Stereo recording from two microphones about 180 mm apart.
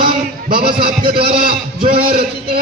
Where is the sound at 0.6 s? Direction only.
30° right (ahead or behind).